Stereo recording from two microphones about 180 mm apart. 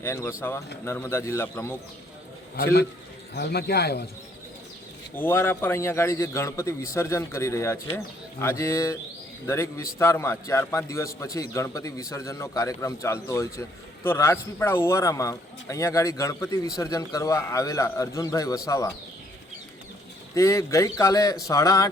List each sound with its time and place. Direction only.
0.0 s a man's voice: 15° left (ahead or behind)
3.3 s speech: 60° left (ahead or behind)
5.1 s a man's voice: 10° left (ahead or behind)
20.3 s a man's voice: 15° left (ahead or behind)